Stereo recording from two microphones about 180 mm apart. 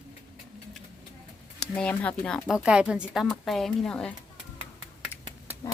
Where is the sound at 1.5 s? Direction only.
5° left (ahead or behind).